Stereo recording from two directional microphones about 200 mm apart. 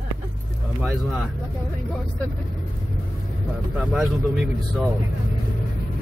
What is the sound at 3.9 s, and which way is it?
Speech, centre (ahead or behind).